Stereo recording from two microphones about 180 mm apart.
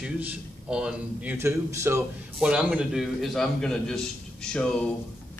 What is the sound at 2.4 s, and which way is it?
A man's voice, 5° right (ahead or behind).